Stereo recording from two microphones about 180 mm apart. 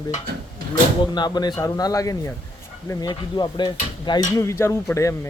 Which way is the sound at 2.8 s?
20° left (ahead or behind).